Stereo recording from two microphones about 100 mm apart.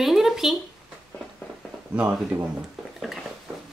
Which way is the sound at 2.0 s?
20° right (ahead or behind).